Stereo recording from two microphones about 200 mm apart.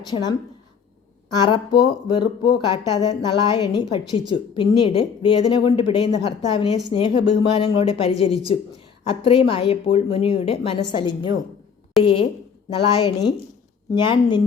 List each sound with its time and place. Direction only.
0.0 s speech: 20° left (ahead or behind)
12.0 s a woman's voice: centre (ahead or behind)
12.7 s speech: 25° left (ahead or behind)